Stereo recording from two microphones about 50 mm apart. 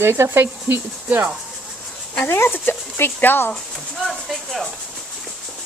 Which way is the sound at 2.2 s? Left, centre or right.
Left.